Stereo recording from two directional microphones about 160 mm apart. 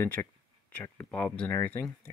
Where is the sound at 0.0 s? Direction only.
15° left (ahead or behind).